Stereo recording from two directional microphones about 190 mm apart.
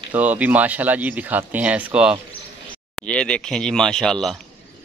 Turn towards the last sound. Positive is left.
turn(degrees=0)  # may be behind; listen again after turning